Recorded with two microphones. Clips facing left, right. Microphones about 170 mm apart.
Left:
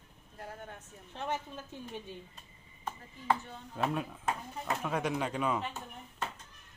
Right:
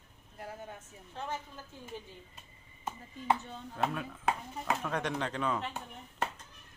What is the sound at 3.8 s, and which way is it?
Speech, 20° left (ahead or behind).